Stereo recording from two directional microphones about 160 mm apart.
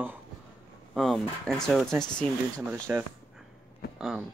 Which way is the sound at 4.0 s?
Centre (ahead or behind).